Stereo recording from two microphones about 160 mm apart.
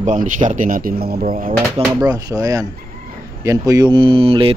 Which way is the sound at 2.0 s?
25° right (ahead or behind).